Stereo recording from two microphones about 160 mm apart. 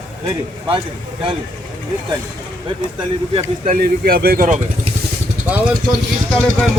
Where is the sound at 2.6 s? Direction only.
30° right (ahead or behind).